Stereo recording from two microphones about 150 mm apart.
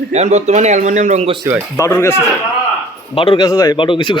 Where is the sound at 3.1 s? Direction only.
40° left (ahead or behind).